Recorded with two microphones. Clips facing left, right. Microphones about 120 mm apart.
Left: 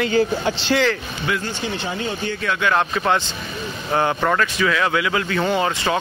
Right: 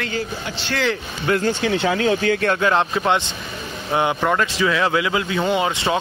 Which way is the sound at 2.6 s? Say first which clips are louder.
Right 1 dB; 25° right (ahead or behind).